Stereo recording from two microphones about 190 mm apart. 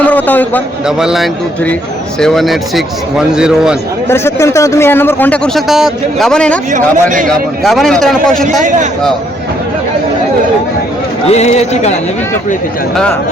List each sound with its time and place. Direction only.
0.0 s a sound: 10° left (ahead or behind)
0.9 s a man's voice: 5° right (ahead or behind)
4.1 s speech: 15° left (ahead or behind)
6.7 s speech: 40° right (ahead or behind)
7.3 s a man's voice: centre (ahead or behind)
11.3 s a man's voice: 35° left (ahead or behind)